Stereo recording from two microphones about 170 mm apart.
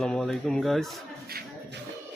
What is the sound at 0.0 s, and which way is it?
Speech, centre (ahead or behind).